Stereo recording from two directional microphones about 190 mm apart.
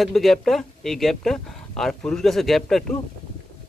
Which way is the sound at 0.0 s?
Centre (ahead or behind).